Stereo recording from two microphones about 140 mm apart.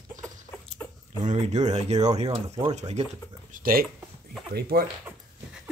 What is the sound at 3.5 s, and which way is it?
Speech, 90° right.